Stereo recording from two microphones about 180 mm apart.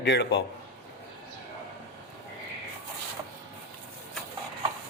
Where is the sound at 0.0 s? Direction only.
65° left (ahead or behind).